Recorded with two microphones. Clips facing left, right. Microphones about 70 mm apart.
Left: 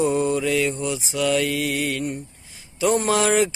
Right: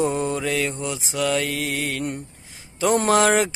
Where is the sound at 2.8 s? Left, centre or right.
Right.